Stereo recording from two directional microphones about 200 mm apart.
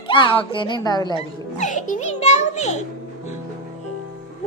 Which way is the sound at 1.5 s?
40° left (ahead or behind).